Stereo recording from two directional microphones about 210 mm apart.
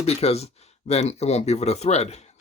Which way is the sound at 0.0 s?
30° left (ahead or behind).